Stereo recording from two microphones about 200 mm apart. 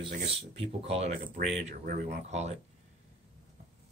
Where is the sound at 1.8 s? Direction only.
50° right (ahead or behind).